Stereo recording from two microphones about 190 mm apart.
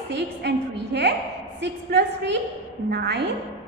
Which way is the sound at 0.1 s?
65° right (ahead or behind).